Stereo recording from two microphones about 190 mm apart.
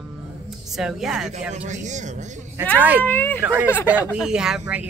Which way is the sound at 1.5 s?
40° right (ahead or behind).